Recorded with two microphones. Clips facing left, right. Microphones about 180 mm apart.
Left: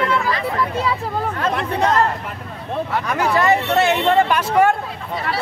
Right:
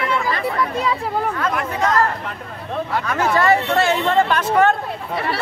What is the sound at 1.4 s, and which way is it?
Speech, 30° left (ahead or behind).